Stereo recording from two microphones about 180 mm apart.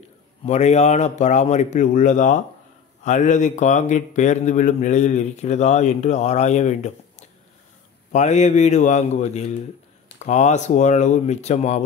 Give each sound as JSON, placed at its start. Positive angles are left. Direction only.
{"t": 0.5, "sound": "speech", "side_deg": 40}